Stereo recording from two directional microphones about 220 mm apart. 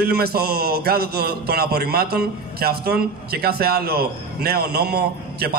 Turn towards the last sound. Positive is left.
turn(degrees=-45)  # may be behind; listen again after turning